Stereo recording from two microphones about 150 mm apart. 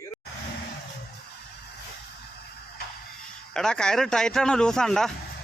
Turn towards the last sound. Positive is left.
turn(degrees=5)  # may be behind; listen again after turning